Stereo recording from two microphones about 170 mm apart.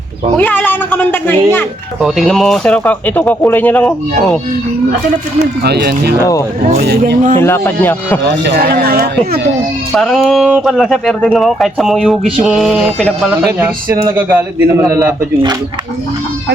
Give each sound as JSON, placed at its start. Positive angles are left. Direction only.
{"t": 0.3, "sound": "a man's voice", "side_deg": 10}
{"t": 2.0, "sound": "speech", "side_deg": 0}
{"t": 5.6, "sound": "speech", "side_deg": -80}
{"t": 6.7, "sound": "speech", "side_deg": -60}
{"t": 7.4, "sound": "speech", "side_deg": 15}
{"t": 8.2, "sound": "speech", "side_deg": -85}
{"t": 9.9, "sound": "speech", "side_deg": 0}
{"t": 14.1, "sound": "a man's voice", "side_deg": -15}